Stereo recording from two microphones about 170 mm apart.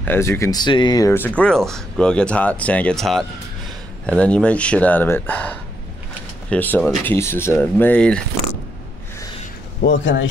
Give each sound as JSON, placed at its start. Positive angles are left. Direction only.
{"t": 0.0, "sound": "speech", "side_deg": 15}
{"t": 9.8, "sound": "a man's voice", "side_deg": 90}